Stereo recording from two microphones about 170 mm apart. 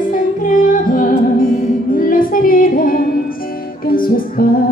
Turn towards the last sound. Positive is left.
turn(degrees=60)  # may be behind; listen again after turning